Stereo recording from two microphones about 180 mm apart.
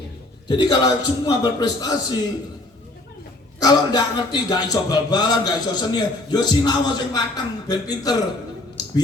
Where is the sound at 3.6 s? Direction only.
20° left (ahead or behind).